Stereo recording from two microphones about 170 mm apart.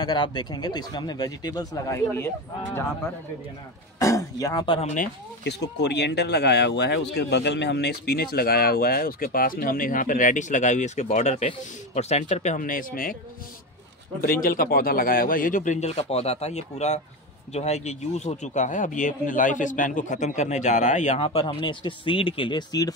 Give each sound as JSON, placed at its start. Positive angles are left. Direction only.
{"t": 0.0, "sound": "speech", "side_deg": 25}
{"t": 4.0, "sound": "speech", "side_deg": 20}
{"t": 5.4, "sound": "speech", "side_deg": 85}
{"t": 12.5, "sound": "speech", "side_deg": 55}
{"t": 14.4, "sound": "speech", "side_deg": 55}